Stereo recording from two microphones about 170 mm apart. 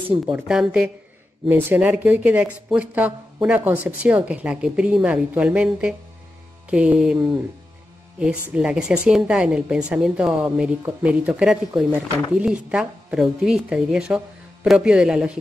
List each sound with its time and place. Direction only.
0.3 s a woman's voice: 5° right (ahead or behind)